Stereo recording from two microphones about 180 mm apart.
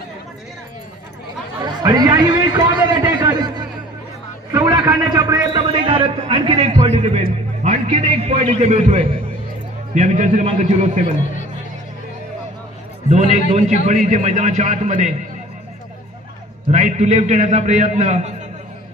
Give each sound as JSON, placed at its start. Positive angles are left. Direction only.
{"t": 1.8, "sound": "a sound", "side_deg": -20}
{"t": 4.5, "sound": "a man's voice", "side_deg": -20}
{"t": 13.1, "sound": "a man's voice", "side_deg": -40}
{"t": 16.7, "sound": "a man's voice", "side_deg": -40}